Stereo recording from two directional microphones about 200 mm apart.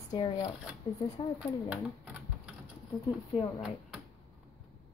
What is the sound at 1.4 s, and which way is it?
Typewriter, 5° right (ahead or behind).